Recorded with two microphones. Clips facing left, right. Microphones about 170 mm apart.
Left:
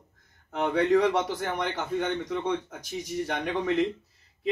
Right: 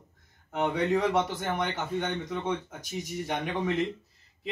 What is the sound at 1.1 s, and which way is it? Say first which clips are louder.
Speech: even; 25° right (ahead or behind).